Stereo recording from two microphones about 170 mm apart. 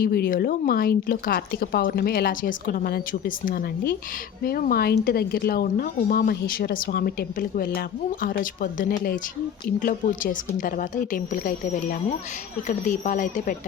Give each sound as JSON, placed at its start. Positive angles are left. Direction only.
{"t": 0.0, "sound": "a woman's voice", "side_deg": 60}